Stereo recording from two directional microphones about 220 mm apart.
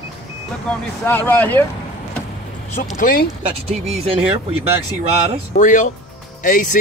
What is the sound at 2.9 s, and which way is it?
Speech, 40° left (ahead or behind).